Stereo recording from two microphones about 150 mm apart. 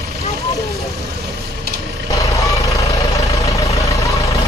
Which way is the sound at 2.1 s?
20° left (ahead or behind).